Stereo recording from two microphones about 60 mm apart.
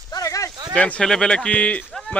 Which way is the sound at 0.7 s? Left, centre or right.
Left.